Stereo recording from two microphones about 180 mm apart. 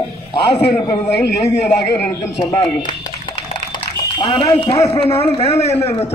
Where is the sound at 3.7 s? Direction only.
30° left (ahead or behind).